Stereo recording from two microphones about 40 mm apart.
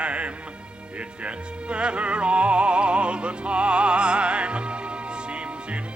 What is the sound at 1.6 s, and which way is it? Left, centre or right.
Music, right.